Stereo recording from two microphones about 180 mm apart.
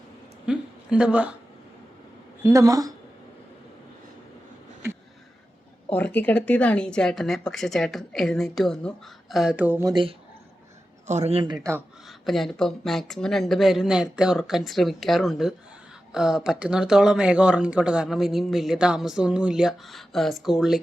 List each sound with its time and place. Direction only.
0.4 s a woman's voice: 5° right (ahead or behind)
2.4 s a woman's voice: 15° right (ahead or behind)
5.9 s speech: 10° left (ahead or behind); by 9.9 s 10° right (ahead or behind)
9.9 s a woman's voice: 30° right (ahead or behind)
11.0 s a man's voice: 40° right (ahead or behind)
12.0 s speech: centre (ahead or behind)